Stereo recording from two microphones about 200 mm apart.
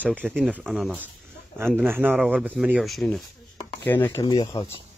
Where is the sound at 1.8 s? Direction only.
10° right (ahead or behind); by 4.2 s 10° left (ahead or behind).